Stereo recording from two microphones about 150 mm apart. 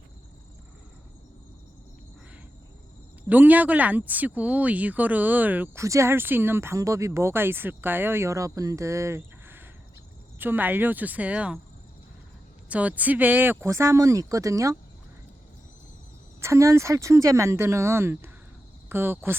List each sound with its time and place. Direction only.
3.2 s speech: 10° right (ahead or behind)
12.6 s speech: 10° right (ahead or behind)
16.4 s speech: 20° right (ahead or behind)